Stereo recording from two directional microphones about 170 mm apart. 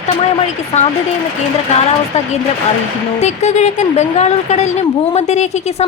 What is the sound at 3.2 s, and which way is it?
A woman's voice, 40° left (ahead or behind).